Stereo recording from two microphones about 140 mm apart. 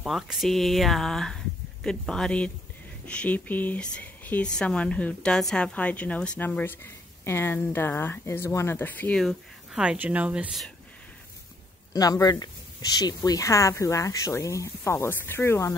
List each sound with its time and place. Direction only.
0.0 s speech: centre (ahead or behind)
9.2 s speech: 5° right (ahead or behind)
11.9 s speech: 30° left (ahead or behind)